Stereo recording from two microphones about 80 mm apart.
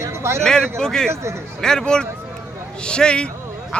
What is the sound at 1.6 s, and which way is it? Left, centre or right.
Speech, centre.